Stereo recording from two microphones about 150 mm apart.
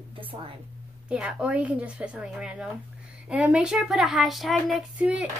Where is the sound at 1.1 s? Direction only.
5° right (ahead or behind).